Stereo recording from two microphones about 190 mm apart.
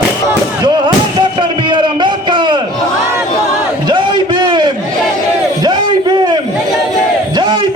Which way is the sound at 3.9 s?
25° right (ahead or behind).